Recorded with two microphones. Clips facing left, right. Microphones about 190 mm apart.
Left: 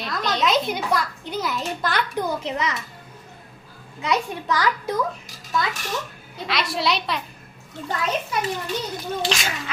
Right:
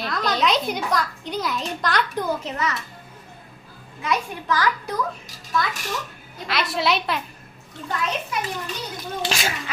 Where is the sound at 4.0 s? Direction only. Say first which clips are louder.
Left 2 dB; 20° left (ahead or behind).